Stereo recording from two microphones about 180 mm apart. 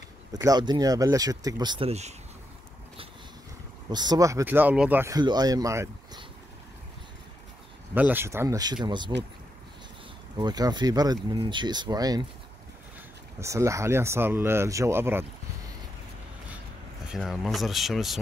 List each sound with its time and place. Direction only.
0.3 s speech: 20° right (ahead or behind); by 2.1 s 35° right (ahead or behind)
3.9 s speech: 25° right (ahead or behind)
7.9 s speech: 10° right (ahead or behind)
10.3 s speech: 20° right (ahead or behind)
13.4 s speech: 15° right (ahead or behind)
17.1 s speech: centre (ahead or behind)